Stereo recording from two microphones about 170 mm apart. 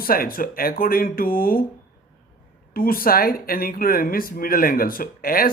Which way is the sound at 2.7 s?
60° left (ahead or behind).